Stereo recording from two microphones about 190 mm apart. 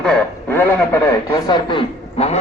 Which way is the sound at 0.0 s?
5° left (ahead or behind).